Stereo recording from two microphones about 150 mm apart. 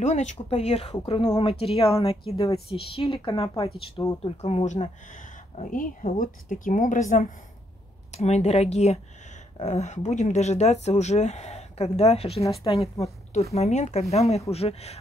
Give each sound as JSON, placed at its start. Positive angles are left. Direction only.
{"t": 0.0, "sound": "speech", "side_deg": 50}
{"t": 8.1, "sound": "speech", "side_deg": 45}